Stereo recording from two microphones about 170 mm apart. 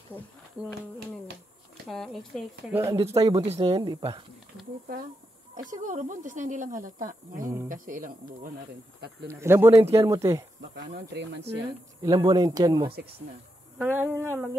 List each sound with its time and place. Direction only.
0.6 s speech: 5° right (ahead or behind)
1.9 s speech: centre (ahead or behind)
2.7 s speech: 20° right (ahead or behind)
3.3 s speech: 35° right (ahead or behind)
5.7 s speech: 50° right (ahead or behind)
9.4 s speech: 15° right (ahead or behind)
11.1 s speech: 90° right
12.0 s speech: 25° right (ahead or behind)
13.7 s speech: 10° right (ahead or behind)